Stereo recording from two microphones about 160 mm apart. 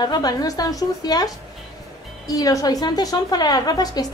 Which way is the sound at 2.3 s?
20° left (ahead or behind).